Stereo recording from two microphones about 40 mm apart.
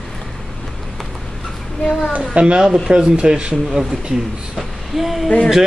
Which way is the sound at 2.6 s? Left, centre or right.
Centre.